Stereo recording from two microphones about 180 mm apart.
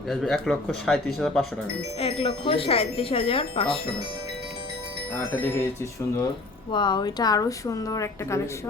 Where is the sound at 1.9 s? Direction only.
30° left (ahead or behind).